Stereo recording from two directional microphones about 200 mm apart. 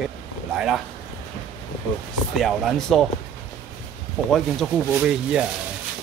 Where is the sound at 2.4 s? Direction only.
Centre (ahead or behind).